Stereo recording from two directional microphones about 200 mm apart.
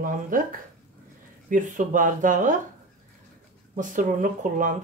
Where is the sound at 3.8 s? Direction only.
40° right (ahead or behind).